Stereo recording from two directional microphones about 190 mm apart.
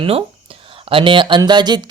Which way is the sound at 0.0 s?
30° right (ahead or behind).